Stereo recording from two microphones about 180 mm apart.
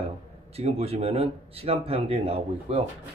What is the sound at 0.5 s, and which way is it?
Speech, 35° right (ahead or behind).